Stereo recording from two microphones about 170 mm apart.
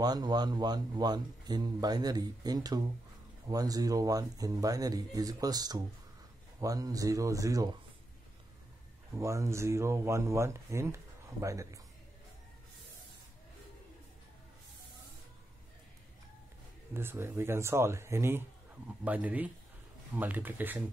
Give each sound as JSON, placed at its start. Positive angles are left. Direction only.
{"t": 0.0, "sound": "a man's voice", "side_deg": -25}
{"t": 9.1, "sound": "speech", "side_deg": -15}
{"t": 16.9, "sound": "speech", "side_deg": -15}